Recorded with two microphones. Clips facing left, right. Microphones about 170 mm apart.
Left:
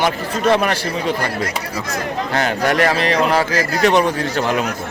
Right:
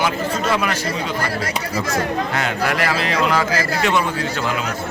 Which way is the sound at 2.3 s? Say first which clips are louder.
Left 8 dB; 35° left (ahead or behind).